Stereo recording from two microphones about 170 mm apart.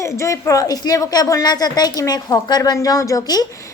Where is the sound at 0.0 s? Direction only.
15° left (ahead or behind).